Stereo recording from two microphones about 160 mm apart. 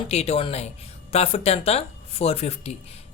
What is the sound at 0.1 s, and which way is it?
Speech, 40° left (ahead or behind).